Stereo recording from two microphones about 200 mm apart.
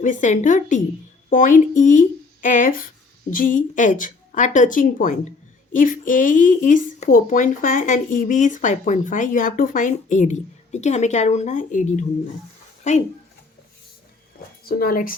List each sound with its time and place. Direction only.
0.0 s speech: 40° left (ahead or behind)
14.7 s speech: 45° left (ahead or behind)